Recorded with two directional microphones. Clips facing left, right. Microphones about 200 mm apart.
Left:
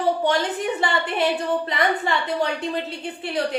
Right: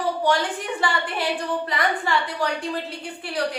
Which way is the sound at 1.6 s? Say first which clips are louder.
Left 2 dB; 25° left (ahead or behind).